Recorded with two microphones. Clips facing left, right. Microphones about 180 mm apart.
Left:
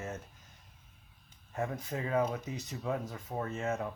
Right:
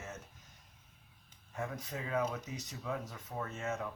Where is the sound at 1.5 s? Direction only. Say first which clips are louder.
Left 5 dB; 40° left (ahead or behind).